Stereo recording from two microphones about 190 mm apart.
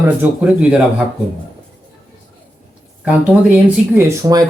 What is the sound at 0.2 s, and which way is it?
Speech, 5° right (ahead or behind).